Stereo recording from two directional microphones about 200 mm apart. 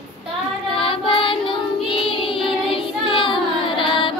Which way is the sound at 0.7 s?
25° left (ahead or behind).